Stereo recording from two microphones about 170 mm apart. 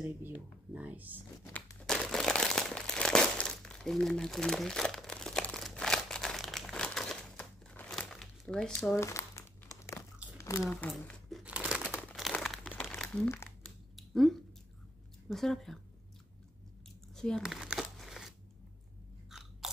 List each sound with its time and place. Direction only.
0.7 s speech: 10° right (ahead or behind)
1.4 s a sound: 15° left (ahead or behind)
1.9 s crumpling: 5° left (ahead or behind)
8.9 s crumpling: 15° left (ahead or behind)
10.3 s biting: 20° left (ahead or behind)
10.7 s crumpling: 10° left (ahead or behind)
13.7 s a sound: centre (ahead or behind)
15.2 s speech: centre (ahead or behind)
17.1 s crumpling: 5° left (ahead or behind)
19.3 s biting: centre (ahead or behind)